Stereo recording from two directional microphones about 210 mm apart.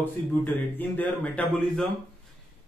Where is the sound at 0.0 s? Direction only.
10° left (ahead or behind).